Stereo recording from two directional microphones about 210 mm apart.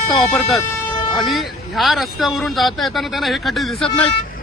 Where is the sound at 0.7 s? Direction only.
15° left (ahead or behind).